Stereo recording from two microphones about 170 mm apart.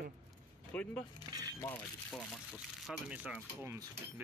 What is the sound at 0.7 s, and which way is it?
Speech, 5° left (ahead or behind).